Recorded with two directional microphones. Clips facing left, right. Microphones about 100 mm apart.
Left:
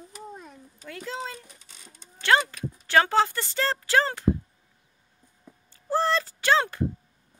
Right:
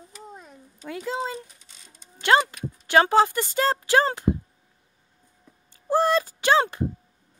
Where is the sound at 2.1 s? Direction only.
20° right (ahead or behind).